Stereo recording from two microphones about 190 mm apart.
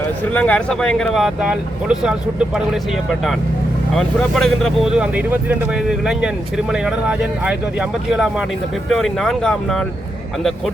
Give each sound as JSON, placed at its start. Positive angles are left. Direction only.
{"t": 0.3, "sound": "speech", "side_deg": 5}
{"t": 3.9, "sound": "speech", "side_deg": 0}